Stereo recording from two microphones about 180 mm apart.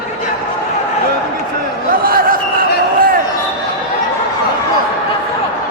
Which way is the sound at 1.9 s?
55° right (ahead or behind).